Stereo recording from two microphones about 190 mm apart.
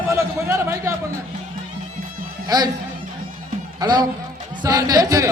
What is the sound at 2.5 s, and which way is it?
Speech, 20° right (ahead or behind).